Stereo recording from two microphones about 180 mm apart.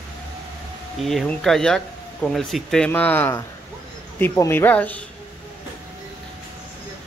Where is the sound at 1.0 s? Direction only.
Centre (ahead or behind).